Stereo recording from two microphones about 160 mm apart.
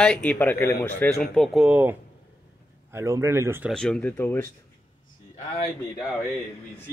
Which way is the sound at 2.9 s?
15° right (ahead or behind).